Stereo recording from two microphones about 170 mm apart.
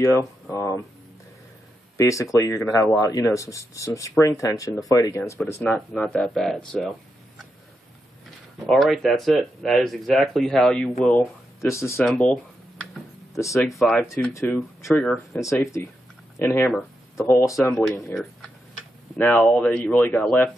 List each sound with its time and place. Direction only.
0.0 s speech: 15° left (ahead or behind)
2.0 s speech: 20° left (ahead or behind)
5.6 s speech: 5° left (ahead or behind)
6.7 s a sound: centre (ahead or behind)
8.6 s speech: centre (ahead or behind)
11.7 s speech: 15° left (ahead or behind)
12.0 s speech: 5° left (ahead or behind)
13.5 s speech: centre (ahead or behind)
14.3 s speech: 15° left (ahead or behind)
14.9 s speech: 5° left (ahead or behind)
15.4 s speech: 20° left (ahead or behind)
17.6 s speech: 5° left (ahead or behind)